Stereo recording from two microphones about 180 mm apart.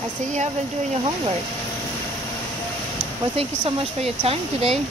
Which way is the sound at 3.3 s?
35° right (ahead or behind).